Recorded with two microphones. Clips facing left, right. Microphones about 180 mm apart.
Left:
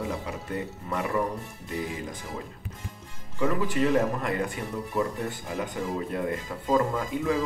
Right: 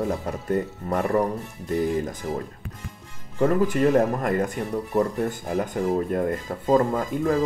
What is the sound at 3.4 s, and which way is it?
Speech, 50° right (ahead or behind).